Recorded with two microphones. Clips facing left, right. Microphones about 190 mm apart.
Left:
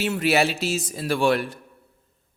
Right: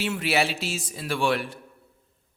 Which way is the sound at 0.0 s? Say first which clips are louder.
Left 4 dB; 45° left (ahead or behind).